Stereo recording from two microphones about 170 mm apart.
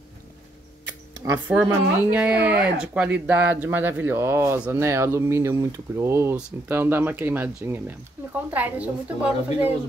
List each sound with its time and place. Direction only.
1.5 s speech: 5° right (ahead or behind)